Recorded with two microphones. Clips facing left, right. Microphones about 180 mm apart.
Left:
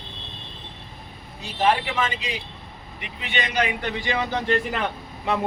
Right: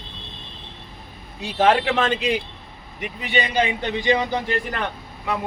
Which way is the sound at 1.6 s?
85° right.